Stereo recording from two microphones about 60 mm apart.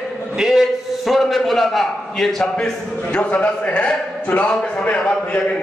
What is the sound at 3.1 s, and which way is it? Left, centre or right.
A man's voice, centre.